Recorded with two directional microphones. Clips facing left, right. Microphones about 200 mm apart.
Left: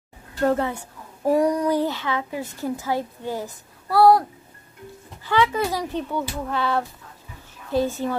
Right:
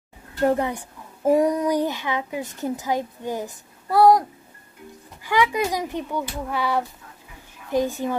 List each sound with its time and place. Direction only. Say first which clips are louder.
0.4 s a child's voice: even; 15° right (ahead or behind)
5.2 s a child's voice: even; 15° right (ahead or behind)